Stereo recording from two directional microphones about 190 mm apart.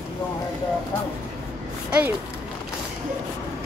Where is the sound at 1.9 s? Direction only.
10° right (ahead or behind).